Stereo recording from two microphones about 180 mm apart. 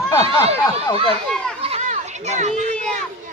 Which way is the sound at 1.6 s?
35° right (ahead or behind).